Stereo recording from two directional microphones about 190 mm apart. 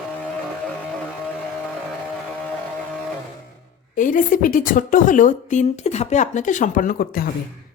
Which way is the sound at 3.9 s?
45° left (ahead or behind).